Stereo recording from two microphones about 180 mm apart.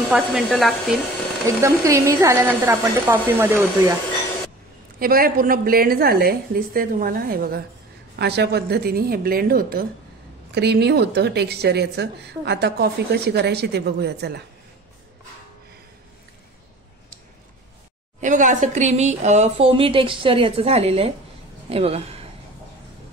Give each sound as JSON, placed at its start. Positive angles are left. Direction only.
{"t": 0.1, "sound": "speech", "side_deg": 0}
{"t": 1.6, "sound": "a woman's voice", "side_deg": -15}
{"t": 4.9, "sound": "a woman's voice", "side_deg": -55}
{"t": 10.5, "sound": "a woman's voice", "side_deg": -65}
{"t": 18.2, "sound": "speech", "side_deg": -45}